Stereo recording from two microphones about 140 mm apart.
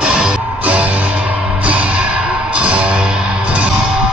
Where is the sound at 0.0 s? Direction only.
5° right (ahead or behind).